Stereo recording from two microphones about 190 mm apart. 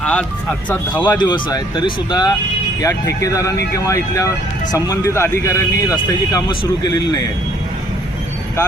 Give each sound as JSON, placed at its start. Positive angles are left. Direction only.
{"t": 0.0, "sound": "speech", "side_deg": 5}
{"t": 1.0, "sound": "speech", "side_deg": 20}